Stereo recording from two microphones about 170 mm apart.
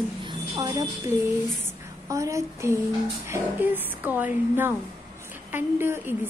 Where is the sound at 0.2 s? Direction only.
25° right (ahead or behind).